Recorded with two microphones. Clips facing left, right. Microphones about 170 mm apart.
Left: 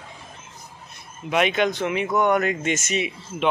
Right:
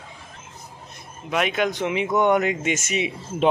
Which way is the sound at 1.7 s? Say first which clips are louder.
Right 1 dB; 20° right (ahead or behind).